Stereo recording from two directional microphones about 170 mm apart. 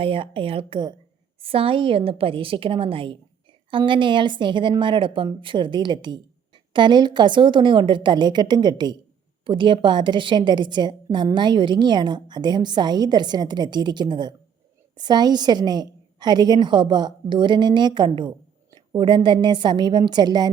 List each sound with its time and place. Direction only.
0.0 s a woman's voice: 30° right (ahead or behind)